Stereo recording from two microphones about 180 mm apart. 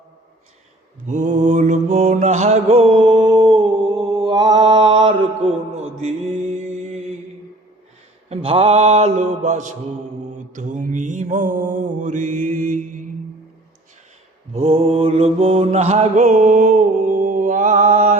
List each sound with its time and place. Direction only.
1.0 s mantra: 40° right (ahead or behind)
8.3 s a man's voice: 30° right (ahead or behind)
10.5 s mantra: 45° right (ahead or behind)
14.5 s mantra: 35° right (ahead or behind)